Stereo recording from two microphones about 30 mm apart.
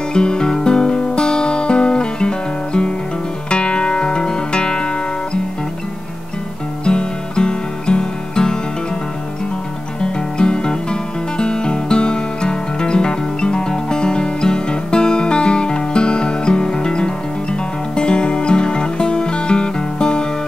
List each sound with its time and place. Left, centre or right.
0.1 s music: left
6.8 s music: left
9.9 s music: left